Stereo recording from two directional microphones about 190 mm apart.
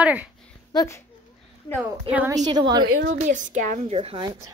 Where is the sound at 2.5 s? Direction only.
20° right (ahead or behind).